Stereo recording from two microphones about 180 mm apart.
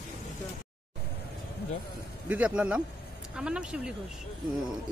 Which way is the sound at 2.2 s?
5° right (ahead or behind).